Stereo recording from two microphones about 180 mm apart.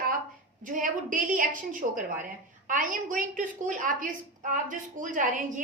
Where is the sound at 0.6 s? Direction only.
45° right (ahead or behind).